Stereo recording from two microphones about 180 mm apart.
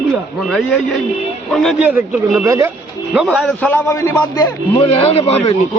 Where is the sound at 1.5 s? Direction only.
Centre (ahead or behind).